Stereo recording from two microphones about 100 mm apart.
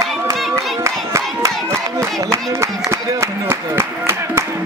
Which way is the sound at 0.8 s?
30° right (ahead or behind).